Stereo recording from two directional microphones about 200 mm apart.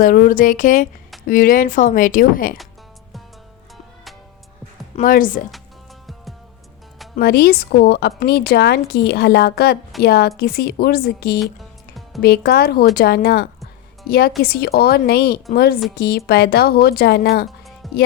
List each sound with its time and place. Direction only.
0.0 s a woman's voice: 45° left (ahead or behind)
4.9 s speech: 45° left (ahead or behind)
7.2 s a woman's voice: 50° left (ahead or behind)
17.8 s music: centre (ahead or behind)